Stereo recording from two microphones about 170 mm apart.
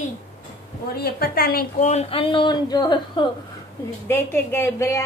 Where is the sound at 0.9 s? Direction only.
65° left (ahead or behind).